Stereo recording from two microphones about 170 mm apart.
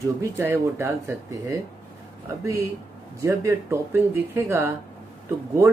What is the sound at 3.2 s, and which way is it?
Speech, 15° right (ahead or behind).